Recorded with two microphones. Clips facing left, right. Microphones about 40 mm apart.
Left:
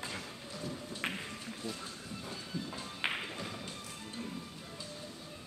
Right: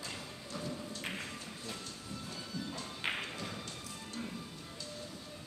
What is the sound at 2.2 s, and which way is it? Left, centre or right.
Music, centre.